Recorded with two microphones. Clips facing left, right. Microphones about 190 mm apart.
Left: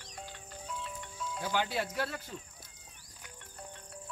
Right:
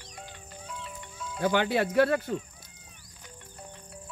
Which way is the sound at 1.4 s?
65° right (ahead or behind).